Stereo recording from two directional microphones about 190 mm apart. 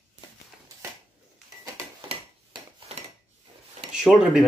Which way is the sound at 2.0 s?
30° right (ahead or behind).